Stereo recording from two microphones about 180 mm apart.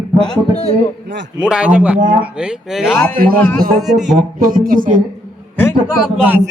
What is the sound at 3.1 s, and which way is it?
Speech, 55° right (ahead or behind).